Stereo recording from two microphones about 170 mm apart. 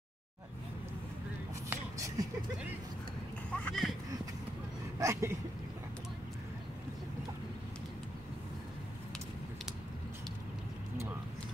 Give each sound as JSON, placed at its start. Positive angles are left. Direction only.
{"t": 1.7, "sound": "a sound", "side_deg": -20}
{"t": 3.5, "sound": "speech", "side_deg": 5}
{"t": 4.9, "sound": "speech", "side_deg": -20}